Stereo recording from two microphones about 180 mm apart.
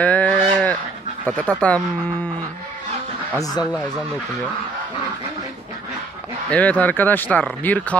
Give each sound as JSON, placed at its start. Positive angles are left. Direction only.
{"t": 0.0, "sound": "livestock", "side_deg": 10}
{"t": 1.2, "sound": "speech", "side_deg": 10}
{"t": 3.4, "sound": "speech", "side_deg": 20}
{"t": 6.5, "sound": "speech", "side_deg": 5}